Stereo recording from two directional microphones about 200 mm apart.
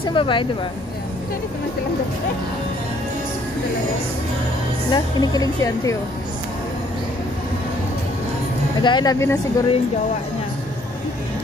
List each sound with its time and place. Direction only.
0.0 s speech: 25° left (ahead or behind)
4.9 s speech: 20° left (ahead or behind)
8.8 s speech: 20° left (ahead or behind)